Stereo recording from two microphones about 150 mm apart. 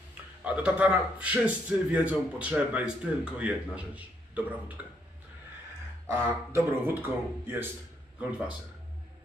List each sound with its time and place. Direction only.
0.4 s a man's voice: 10° right (ahead or behind)
6.0 s a man's voice: 15° right (ahead or behind)